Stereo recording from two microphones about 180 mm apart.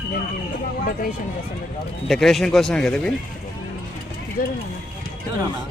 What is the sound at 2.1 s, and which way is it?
Speech, centre (ahead or behind).